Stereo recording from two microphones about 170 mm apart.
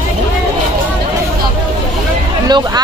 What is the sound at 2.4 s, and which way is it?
Speech, 25° right (ahead or behind).